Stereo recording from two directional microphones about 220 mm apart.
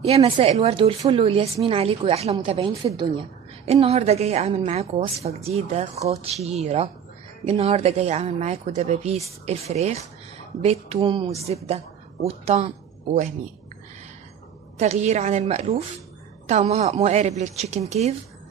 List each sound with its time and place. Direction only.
0.0 s a woman's voice: 25° right (ahead or behind)
14.8 s a woman's voice: 30° right (ahead or behind)